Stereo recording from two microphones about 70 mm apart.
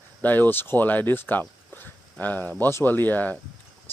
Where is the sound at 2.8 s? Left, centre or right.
Left.